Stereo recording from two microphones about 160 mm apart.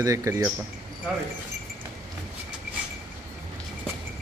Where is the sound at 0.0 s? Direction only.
20° right (ahead or behind).